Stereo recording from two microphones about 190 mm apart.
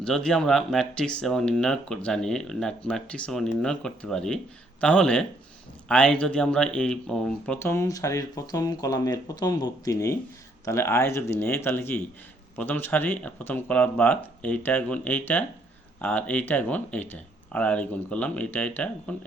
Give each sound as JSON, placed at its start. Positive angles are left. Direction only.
{"t": 0.0, "sound": "speech", "side_deg": 5}